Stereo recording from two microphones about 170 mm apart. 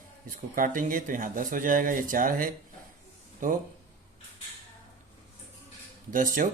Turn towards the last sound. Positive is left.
turn(degrees=-50)  # may be behind; listen again after turning